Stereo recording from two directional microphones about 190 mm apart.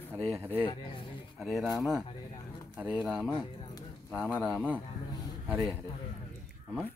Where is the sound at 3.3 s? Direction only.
20° left (ahead or behind).